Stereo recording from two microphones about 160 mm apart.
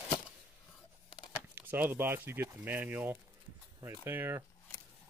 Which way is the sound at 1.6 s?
10° right (ahead or behind).